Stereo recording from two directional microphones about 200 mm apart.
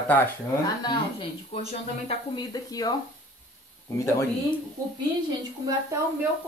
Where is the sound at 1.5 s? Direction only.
30° left (ahead or behind).